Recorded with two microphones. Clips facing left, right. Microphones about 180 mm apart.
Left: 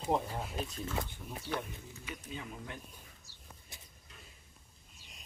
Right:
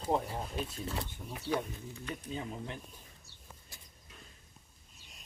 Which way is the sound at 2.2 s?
30° right (ahead or behind).